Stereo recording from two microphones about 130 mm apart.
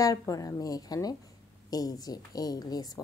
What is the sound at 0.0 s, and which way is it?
A woman's voice, 25° left (ahead or behind).